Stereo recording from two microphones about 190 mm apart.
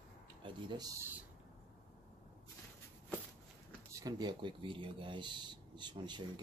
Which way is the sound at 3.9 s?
20° right (ahead or behind).